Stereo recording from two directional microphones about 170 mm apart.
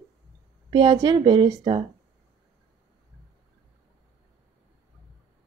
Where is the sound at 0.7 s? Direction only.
25° right (ahead or behind).